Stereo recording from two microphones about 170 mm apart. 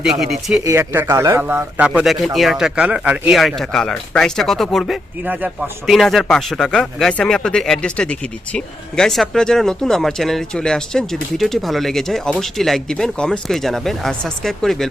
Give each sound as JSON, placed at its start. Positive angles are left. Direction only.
{"t": 0.0, "sound": "speech", "side_deg": 0}
{"t": 0.6, "sound": "speech", "side_deg": -15}
{"t": 1.9, "sound": "speech", "side_deg": 0}
{"t": 5.2, "sound": "speech", "side_deg": -10}